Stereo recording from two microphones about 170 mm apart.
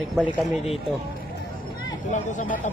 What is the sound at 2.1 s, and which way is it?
Speech, 45° left (ahead or behind).